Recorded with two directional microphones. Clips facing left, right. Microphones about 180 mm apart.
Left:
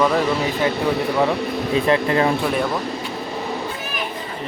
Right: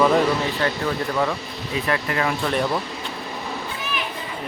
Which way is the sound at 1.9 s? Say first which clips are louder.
Left 5 dB; 30° left (ahead or behind).